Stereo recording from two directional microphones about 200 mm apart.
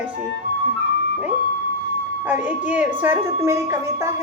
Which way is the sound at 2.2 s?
10° right (ahead or behind).